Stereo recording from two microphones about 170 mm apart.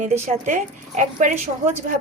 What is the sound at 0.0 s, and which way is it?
Speech, 45° right (ahead or behind).